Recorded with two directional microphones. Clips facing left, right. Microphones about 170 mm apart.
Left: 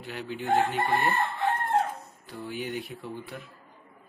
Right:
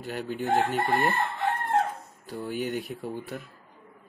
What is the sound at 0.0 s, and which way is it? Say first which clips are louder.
Speech: right 4 dB; 45° right (ahead or behind).